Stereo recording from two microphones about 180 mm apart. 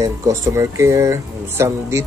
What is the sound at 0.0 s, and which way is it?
Speech, 15° right (ahead or behind).